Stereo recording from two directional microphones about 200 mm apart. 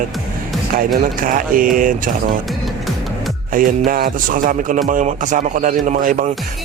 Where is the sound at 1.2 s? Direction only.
45° right (ahead or behind).